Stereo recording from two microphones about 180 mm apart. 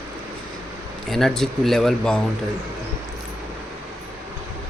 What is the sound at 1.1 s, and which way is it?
Speech, centre (ahead or behind).